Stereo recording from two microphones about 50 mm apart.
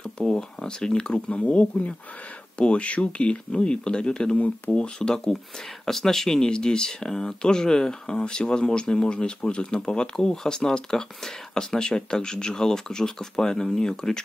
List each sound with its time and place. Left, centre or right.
0.0 s speech: centre